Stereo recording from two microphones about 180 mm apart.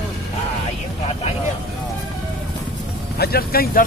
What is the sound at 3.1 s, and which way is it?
Speech, 60° left (ahead or behind).